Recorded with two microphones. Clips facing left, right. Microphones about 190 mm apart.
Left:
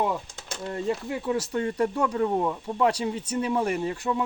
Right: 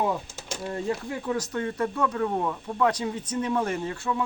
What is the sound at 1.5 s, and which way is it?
Speech, 25° left (ahead or behind).